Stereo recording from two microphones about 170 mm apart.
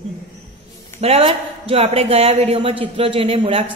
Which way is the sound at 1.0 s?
35° right (ahead or behind).